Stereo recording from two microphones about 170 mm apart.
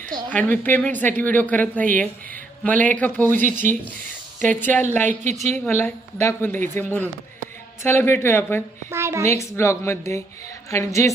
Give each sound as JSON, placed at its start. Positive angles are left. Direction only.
{"t": 0.3, "sound": "speech", "side_deg": 10}
{"t": 5.2, "sound": "a woman's voice", "side_deg": -45}
{"t": 5.7, "sound": "speech", "side_deg": 15}
{"t": 8.9, "sound": "a woman's voice", "side_deg": -15}
{"t": 9.4, "sound": "speech", "side_deg": 15}